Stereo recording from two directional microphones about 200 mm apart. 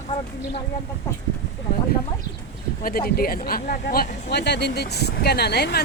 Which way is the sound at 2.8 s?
45° left (ahead or behind).